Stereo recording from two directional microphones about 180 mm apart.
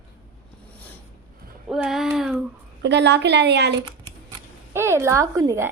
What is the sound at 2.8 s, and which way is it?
Speech, 70° right (ahead or behind).